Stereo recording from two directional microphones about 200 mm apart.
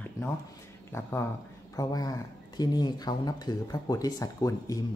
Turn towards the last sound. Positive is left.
turn(degrees=15)  # may be behind; listen again after turning